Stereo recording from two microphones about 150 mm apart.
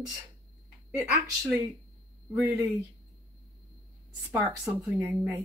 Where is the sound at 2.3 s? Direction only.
20° right (ahead or behind).